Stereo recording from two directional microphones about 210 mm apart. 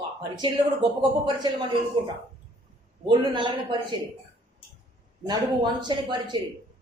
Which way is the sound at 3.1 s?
20° right (ahead or behind).